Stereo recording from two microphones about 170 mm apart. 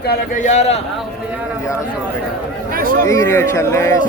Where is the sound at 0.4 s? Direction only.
40° left (ahead or behind).